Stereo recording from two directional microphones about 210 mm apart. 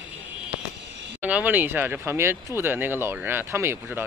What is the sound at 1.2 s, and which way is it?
Speech, 5° right (ahead or behind).